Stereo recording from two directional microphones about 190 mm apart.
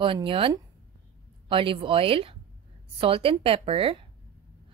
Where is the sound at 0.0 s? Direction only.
25° right (ahead or behind).